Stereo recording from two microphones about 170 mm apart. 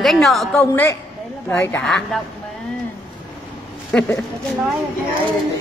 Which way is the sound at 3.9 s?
10° left (ahead or behind).